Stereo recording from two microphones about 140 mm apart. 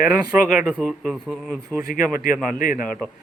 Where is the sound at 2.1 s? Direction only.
80° left.